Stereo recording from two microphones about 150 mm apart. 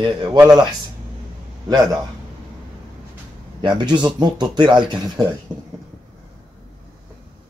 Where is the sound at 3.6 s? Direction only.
30° right (ahead or behind).